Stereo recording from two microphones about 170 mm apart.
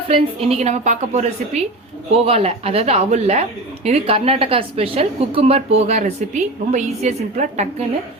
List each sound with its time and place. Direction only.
0.1 s a woman's voice: 35° right (ahead or behind)